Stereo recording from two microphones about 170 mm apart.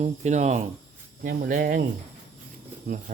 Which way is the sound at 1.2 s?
50° right (ahead or behind).